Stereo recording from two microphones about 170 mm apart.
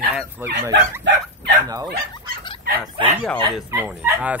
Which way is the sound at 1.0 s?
90° right.